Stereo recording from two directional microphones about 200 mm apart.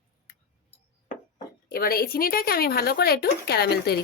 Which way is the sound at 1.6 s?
50° left (ahead or behind).